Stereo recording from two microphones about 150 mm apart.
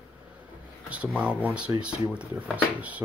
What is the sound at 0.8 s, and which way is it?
Speech, 10° right (ahead or behind).